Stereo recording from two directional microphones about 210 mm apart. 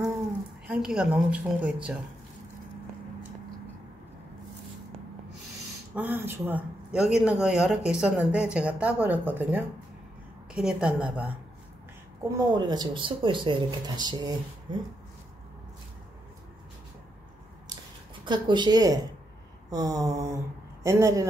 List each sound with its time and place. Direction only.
0.7 s speech: 5° right (ahead or behind)
5.9 s a woman's voice: 10° right (ahead or behind)
12.4 s speech: 20° right (ahead or behind)
18.2 s a woman's voice: 20° right (ahead or behind)